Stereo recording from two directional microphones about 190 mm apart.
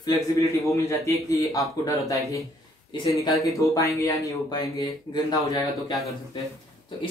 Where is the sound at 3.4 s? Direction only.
15° left (ahead or behind).